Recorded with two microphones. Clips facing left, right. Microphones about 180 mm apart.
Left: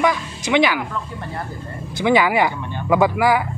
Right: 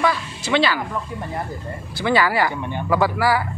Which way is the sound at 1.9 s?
15° left (ahead or behind).